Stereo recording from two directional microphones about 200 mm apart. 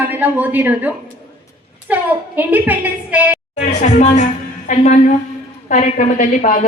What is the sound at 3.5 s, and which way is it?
A woman's voice, 35° left (ahead or behind).